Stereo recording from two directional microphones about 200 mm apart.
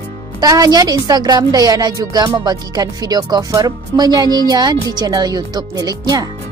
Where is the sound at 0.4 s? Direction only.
20° right (ahead or behind).